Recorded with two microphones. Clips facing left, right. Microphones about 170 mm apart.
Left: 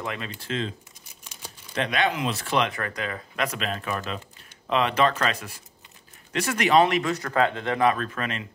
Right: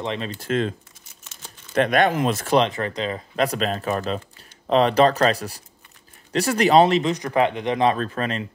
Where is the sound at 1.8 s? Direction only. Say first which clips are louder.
Right 7 dB; 50° right (ahead or behind).